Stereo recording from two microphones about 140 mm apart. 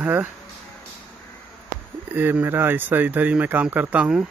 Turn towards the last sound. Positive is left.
turn(degrees=-10)  # may be behind; listen again after turning